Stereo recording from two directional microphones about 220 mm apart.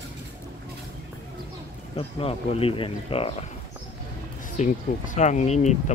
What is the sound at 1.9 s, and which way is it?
Speech, 25° left (ahead or behind).